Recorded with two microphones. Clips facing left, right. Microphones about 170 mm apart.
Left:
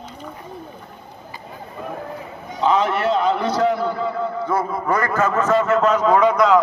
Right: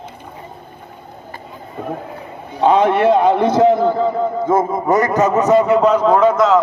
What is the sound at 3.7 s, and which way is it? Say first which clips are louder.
Speech: right 7 dB; 50° right (ahead or behind).